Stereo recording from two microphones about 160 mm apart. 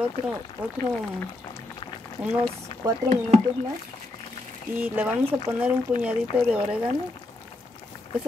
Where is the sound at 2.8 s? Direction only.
20° right (ahead or behind).